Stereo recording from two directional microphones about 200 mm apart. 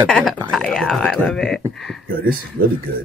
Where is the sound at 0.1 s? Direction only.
Centre (ahead or behind).